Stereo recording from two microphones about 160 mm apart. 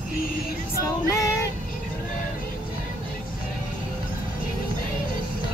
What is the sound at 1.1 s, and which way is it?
Child singing, 20° left (ahead or behind).